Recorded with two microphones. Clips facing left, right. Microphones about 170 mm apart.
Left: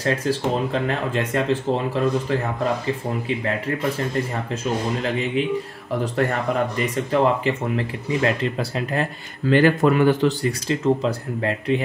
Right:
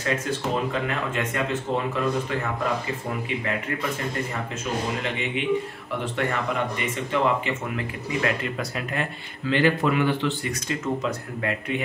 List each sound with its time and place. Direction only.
0.0 s speech: 35° left (ahead or behind)
7.1 s speech: 35° left (ahead or behind)
9.5 s speech: 45° left (ahead or behind)